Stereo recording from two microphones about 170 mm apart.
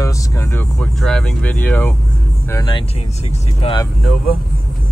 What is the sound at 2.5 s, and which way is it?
Speech, 25° left (ahead or behind).